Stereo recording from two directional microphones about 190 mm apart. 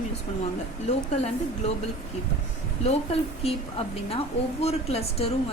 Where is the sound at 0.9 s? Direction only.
35° left (ahead or behind).